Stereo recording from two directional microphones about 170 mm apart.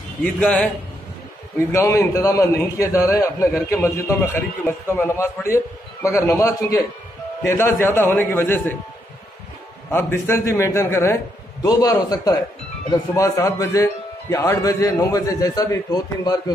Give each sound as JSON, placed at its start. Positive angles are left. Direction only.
{"t": 0.2, "sound": "a man's voice", "side_deg": 5}
{"t": 9.8, "sound": "a man's voice", "side_deg": 15}